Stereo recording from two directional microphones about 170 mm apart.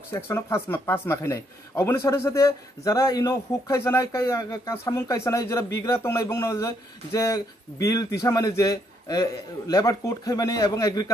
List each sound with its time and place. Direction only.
0.1 s speech: 15° left (ahead or behind)